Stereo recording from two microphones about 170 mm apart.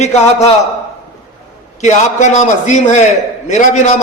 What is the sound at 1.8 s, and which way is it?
A man's voice, 45° left (ahead or behind).